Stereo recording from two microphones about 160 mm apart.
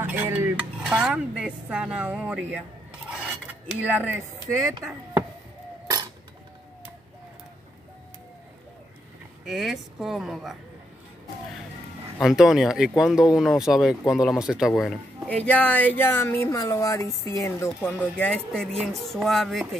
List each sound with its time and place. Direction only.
0.0 s dishes: 10° right (ahead or behind)
3.1 s filing: 5° right (ahead or behind)
3.8 s speech: 10° right (ahead or behind)
9.5 s speech: centre (ahead or behind)
12.2 s speech: centre (ahead or behind)